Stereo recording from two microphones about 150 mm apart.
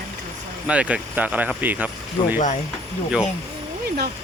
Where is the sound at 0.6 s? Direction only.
10° right (ahead or behind).